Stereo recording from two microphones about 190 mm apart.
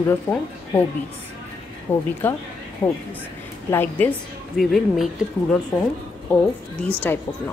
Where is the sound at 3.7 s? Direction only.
10° left (ahead or behind).